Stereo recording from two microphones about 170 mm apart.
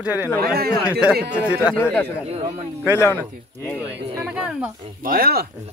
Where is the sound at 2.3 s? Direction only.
35° right (ahead or behind).